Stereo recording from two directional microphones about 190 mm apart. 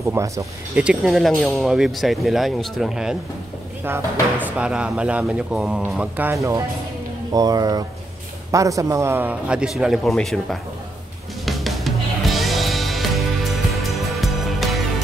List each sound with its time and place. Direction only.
0.1 s speech: 15° right (ahead or behind)
0.7 s speech: 5° right (ahead or behind)
11.4 s music: centre (ahead or behind)